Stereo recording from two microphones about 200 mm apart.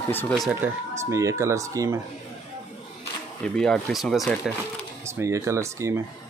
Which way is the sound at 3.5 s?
5° left (ahead or behind).